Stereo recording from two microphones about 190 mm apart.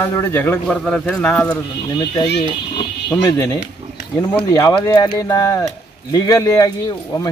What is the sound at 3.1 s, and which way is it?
Speech, 15° left (ahead or behind).